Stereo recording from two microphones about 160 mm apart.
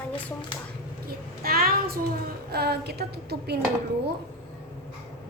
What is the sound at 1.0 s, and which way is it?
Speech, 70° right (ahead or behind).